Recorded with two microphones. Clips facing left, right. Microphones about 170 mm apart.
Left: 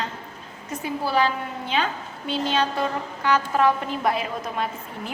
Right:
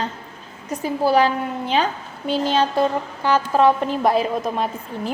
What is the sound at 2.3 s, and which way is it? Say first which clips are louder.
A woman's voice: right 5 dB; 35° right (ahead or behind).